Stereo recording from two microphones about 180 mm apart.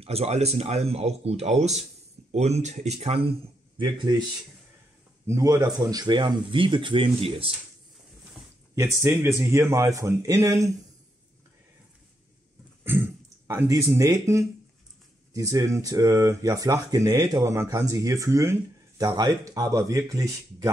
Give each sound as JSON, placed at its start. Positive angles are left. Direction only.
{"t": 0.0, "sound": "speech", "side_deg": -35}
{"t": 5.2, "sound": "speech", "side_deg": -15}
{"t": 8.7, "sound": "a man's voice", "side_deg": -15}
{"t": 12.8, "sound": "a man's voice", "side_deg": -10}